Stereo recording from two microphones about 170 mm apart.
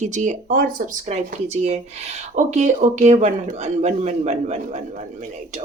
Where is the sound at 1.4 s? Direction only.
40° right (ahead or behind).